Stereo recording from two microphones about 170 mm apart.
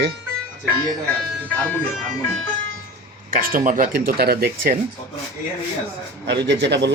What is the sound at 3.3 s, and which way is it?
Speech, 55° right (ahead or behind).